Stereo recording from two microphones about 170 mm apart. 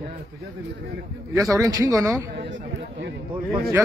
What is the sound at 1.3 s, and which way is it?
Speech, 20° right (ahead or behind).